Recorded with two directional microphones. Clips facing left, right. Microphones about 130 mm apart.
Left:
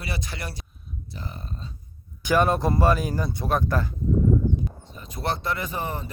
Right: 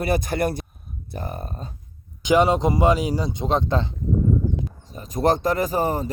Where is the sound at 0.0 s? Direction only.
50° right (ahead or behind).